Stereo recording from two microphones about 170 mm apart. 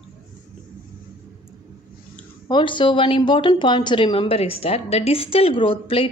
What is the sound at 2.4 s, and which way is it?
A woman's voice, 30° left (ahead or behind).